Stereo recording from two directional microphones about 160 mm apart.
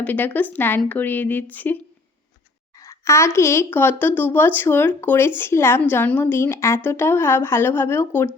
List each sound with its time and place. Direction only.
0.0 s a woman's voice: 10° left (ahead or behind)
2.8 s a woman's voice: 20° left (ahead or behind)